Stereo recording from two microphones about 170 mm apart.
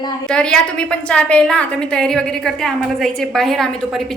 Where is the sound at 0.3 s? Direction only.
5° left (ahead or behind).